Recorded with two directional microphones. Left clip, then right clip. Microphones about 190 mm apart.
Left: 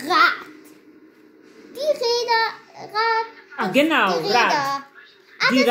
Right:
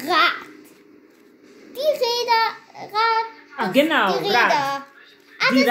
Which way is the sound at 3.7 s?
15° left (ahead or behind).